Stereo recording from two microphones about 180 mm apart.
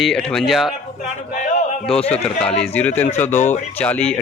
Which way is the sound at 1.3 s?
45° left (ahead or behind).